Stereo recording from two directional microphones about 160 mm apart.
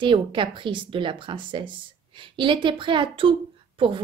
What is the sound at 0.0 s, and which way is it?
A woman's voice, 30° right (ahead or behind).